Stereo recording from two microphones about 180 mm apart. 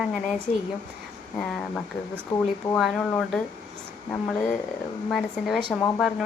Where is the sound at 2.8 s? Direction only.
5° left (ahead or behind).